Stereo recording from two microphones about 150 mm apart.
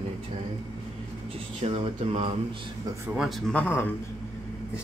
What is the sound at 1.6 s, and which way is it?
Speech, 45° right (ahead or behind).